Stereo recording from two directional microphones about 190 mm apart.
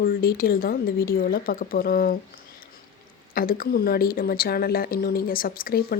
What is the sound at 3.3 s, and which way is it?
Speech, 50° left (ahead or behind).